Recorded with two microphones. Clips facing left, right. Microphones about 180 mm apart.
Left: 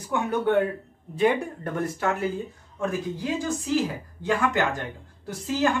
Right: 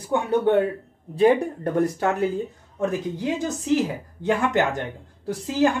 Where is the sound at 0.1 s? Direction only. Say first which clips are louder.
Right 3 dB; 30° right (ahead or behind).